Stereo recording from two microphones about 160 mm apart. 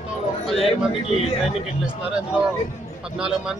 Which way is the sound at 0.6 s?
40° left (ahead or behind).